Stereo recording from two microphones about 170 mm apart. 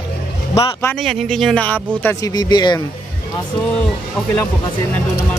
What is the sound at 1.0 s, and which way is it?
Speech, centre (ahead or behind).